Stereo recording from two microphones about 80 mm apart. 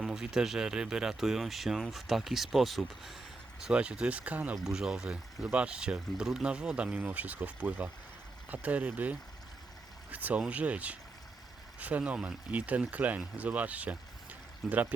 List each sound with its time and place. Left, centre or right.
0.0 s speech: centre
3.6 s speech: centre
4.5 s speech: centre